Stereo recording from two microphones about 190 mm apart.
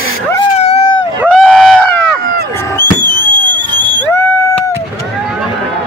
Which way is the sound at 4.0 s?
10° left (ahead or behind).